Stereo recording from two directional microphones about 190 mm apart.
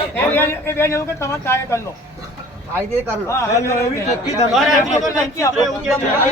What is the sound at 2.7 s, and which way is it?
Speech, 10° right (ahead or behind).